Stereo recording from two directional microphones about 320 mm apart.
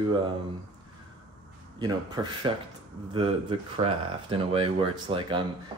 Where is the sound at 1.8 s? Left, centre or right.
Centre.